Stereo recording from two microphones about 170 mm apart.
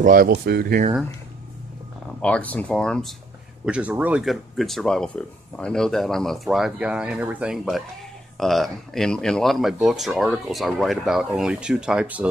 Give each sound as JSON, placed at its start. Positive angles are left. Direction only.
{"t": 0.0, "sound": "speech", "side_deg": -55}
{"t": 0.3, "sound": "speech", "side_deg": -70}
{"t": 2.2, "sound": "speech", "side_deg": 10}
{"t": 3.6, "sound": "speech", "side_deg": -5}